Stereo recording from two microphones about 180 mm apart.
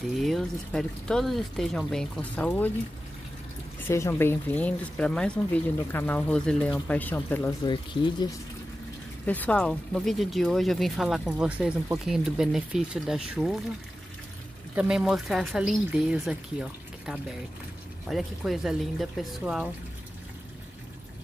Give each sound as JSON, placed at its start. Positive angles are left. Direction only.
{"t": 0.0, "sound": "speech", "side_deg": 0}
{"t": 3.8, "sound": "speech", "side_deg": 15}
{"t": 7.6, "sound": "speech", "side_deg": 25}
{"t": 9.2, "sound": "speech", "side_deg": 10}
{"t": 14.8, "sound": "speech", "side_deg": -5}